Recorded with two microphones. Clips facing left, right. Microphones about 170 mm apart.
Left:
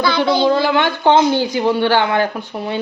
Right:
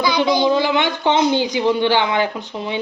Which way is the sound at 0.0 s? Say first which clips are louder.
Left 1 dB; 15° right (ahead or behind).